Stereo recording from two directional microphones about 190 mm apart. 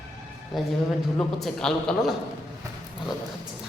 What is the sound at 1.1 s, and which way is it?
Speech, 5° left (ahead or behind).